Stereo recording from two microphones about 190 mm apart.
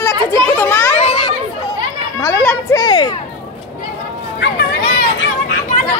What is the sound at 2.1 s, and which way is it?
Children playing, 15° left (ahead or behind).